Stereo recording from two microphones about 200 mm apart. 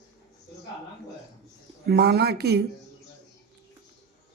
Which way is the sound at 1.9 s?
55° right (ahead or behind).